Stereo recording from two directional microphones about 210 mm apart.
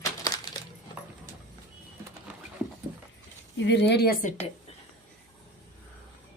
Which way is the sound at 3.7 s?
55° left (ahead or behind).